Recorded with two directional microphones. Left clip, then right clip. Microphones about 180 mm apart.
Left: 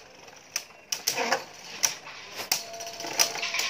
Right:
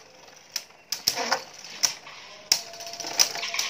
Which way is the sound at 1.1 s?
5° left (ahead or behind).